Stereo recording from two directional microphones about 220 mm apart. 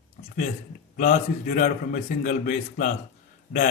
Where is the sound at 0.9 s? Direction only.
35° left (ahead or behind).